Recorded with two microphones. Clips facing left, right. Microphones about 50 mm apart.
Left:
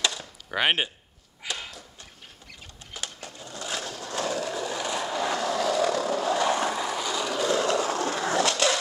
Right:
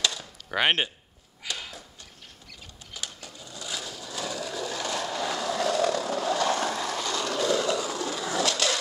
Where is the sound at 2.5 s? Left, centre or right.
Left.